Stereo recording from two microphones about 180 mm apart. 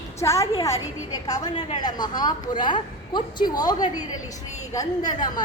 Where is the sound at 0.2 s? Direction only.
15° left (ahead or behind).